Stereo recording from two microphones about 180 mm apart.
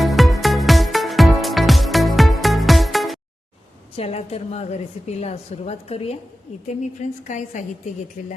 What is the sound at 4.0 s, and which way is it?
A woman's voice, 35° left (ahead or behind).